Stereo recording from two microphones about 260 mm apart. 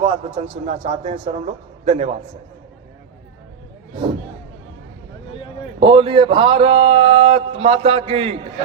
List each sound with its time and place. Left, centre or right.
0.0 s speech: right
5.8 s speech: centre